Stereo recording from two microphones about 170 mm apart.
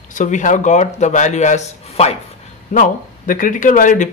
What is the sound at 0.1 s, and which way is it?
Speech, 45° left (ahead or behind).